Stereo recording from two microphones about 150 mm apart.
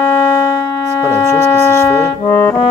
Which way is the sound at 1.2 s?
20° left (ahead or behind).